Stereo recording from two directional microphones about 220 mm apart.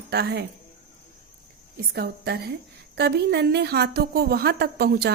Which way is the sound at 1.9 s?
45° right (ahead or behind).